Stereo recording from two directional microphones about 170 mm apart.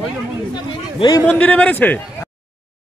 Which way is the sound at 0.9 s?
25° left (ahead or behind).